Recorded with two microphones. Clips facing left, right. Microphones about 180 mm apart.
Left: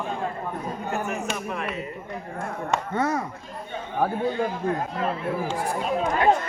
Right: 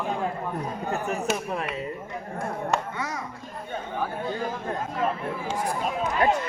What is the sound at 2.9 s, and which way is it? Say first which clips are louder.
Speech: left 8 dB; 50° left (ahead or behind).